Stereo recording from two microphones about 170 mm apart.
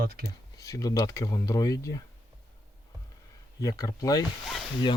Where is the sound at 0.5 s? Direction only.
20° left (ahead or behind).